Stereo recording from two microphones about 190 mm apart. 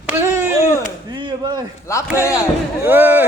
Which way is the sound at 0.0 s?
15° right (ahead or behind).